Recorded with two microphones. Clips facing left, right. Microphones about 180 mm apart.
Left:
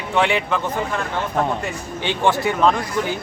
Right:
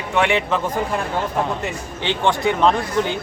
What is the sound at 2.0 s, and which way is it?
Speech, 5° left (ahead or behind).